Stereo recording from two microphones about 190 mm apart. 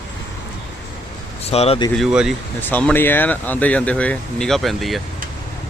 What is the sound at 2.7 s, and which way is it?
Speech, 10° left (ahead or behind).